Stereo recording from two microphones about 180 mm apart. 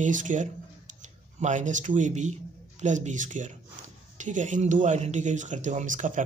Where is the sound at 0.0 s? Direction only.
45° right (ahead or behind).